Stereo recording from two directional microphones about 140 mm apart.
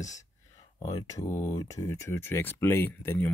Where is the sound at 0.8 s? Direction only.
30° left (ahead or behind).